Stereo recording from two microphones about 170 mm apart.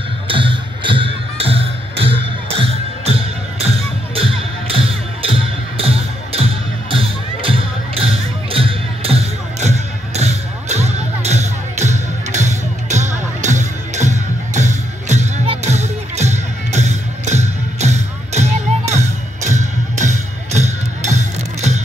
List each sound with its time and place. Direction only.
0.3 s music: 30° right (ahead or behind)